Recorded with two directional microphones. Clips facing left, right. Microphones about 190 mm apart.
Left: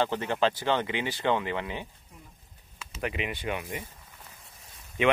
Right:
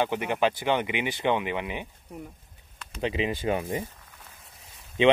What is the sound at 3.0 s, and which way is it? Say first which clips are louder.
Speech: right 5 dB; 30° right (ahead or behind).